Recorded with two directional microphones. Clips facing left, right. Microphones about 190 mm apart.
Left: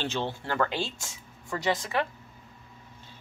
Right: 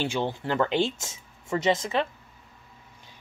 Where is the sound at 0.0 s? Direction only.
15° right (ahead or behind).